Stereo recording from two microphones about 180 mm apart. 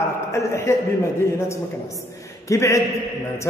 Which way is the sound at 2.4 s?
15° left (ahead or behind).